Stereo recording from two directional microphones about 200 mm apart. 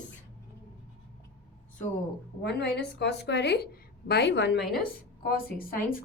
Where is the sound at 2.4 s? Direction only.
55° left (ahead or behind).